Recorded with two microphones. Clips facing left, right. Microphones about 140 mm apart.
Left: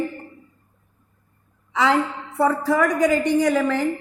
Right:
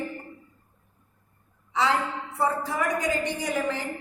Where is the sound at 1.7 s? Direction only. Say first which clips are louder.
Left 5 dB; 90° left.